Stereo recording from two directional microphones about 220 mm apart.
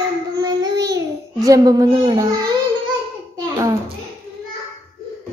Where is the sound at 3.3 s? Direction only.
15° right (ahead or behind).